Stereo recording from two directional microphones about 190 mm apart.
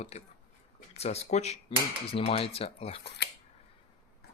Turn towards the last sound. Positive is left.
turn(degrees=30)  # may be behind; listen again after turning